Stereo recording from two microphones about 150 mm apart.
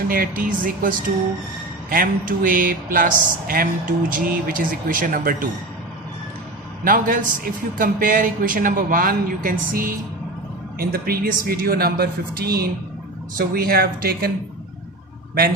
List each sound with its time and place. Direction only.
0.1 s speech: 70° right (ahead or behind)
6.8 s speech: 65° right (ahead or behind)
10.8 s speech: 90° right